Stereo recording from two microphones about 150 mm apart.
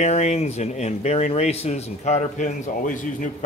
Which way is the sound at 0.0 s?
50° left (ahead or behind).